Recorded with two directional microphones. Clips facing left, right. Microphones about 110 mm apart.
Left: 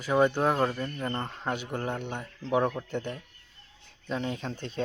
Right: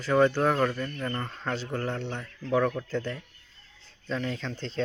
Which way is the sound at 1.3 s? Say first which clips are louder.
Even; 15° left (ahead or behind).